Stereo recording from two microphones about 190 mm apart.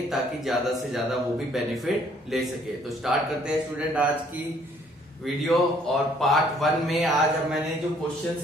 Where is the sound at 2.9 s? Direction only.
Centre (ahead or behind).